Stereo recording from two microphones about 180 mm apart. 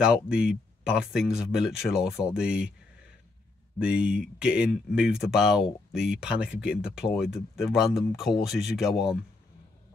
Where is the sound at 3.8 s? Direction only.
5° right (ahead or behind).